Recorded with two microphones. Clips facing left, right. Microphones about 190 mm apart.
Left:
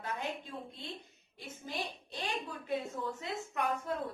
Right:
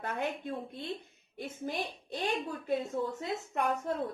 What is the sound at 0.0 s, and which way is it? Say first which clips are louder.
A woman's voice: right 4 dB; 55° right (ahead or behind).